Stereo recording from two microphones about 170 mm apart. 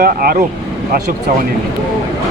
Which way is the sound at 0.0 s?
60° right (ahead or behind).